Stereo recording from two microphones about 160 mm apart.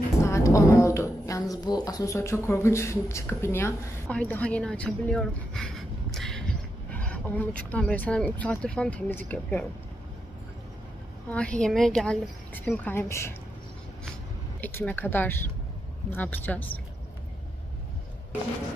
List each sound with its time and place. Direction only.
0.2 s a woman's voice: 20° left (ahead or behind)
11.2 s speech: 5° left (ahead or behind)
14.6 s speech: 15° left (ahead or behind)